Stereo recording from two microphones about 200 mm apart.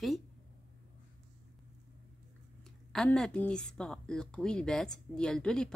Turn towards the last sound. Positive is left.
turn(degrees=5)  # may be behind; listen again after turning